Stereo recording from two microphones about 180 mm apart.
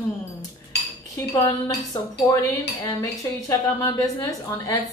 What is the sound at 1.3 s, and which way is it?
A woman's voice, 20° left (ahead or behind).